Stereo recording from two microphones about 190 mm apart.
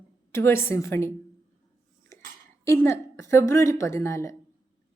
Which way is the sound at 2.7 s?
15° left (ahead or behind).